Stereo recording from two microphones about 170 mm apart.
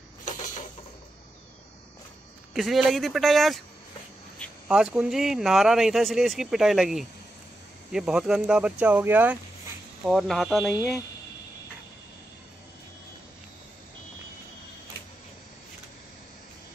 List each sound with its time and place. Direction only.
2.5 s speech: centre (ahead or behind)
4.6 s speech: 5° right (ahead or behind)
10.0 s speech: centre (ahead or behind)